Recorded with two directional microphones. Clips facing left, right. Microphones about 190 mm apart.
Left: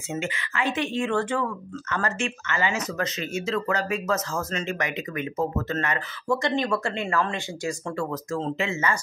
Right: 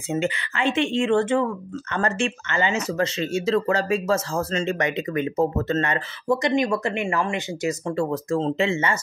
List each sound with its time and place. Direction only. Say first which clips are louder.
0.1 s speech: right 5 dB; 30° right (ahead or behind)
8.1 s speech: right 5 dB; 30° right (ahead or behind)